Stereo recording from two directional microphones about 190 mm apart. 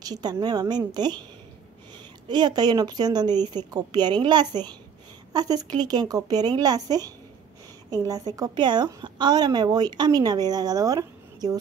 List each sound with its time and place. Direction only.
0.0 s a woman's voice: 20° right (ahead or behind)
2.2 s a woman's voice: 25° right (ahead or behind)